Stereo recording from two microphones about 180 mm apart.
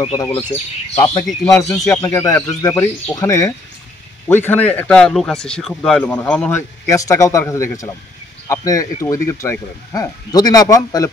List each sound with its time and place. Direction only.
0.0 s speech: 25° left (ahead or behind); by 6.6 s 5° left (ahead or behind)
6.9 s speech: 20° left (ahead or behind)